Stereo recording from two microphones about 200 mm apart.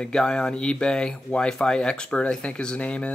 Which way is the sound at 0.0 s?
5° left (ahead or behind).